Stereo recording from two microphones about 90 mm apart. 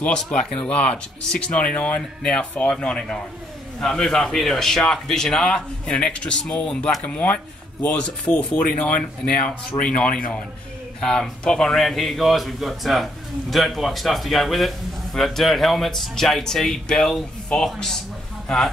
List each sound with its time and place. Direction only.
0.0 s a man's voice: 10° left (ahead or behind)
9.8 s a man's voice: 10° left (ahead or behind)